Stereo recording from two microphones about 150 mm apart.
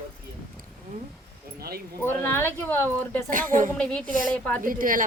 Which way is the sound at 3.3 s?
60° right (ahead or behind).